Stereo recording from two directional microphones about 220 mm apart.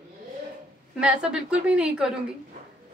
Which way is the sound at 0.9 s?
5° right (ahead or behind).